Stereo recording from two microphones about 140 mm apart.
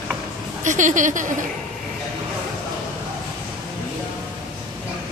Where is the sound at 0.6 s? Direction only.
65° right (ahead or behind).